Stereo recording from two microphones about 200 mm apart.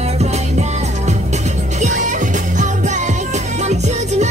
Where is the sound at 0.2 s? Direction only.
35° right (ahead or behind).